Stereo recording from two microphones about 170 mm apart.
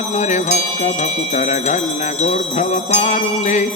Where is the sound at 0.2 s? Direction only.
45° left (ahead or behind).